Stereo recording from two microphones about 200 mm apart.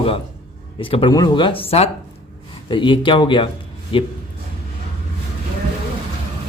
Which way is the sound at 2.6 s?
25° left (ahead or behind).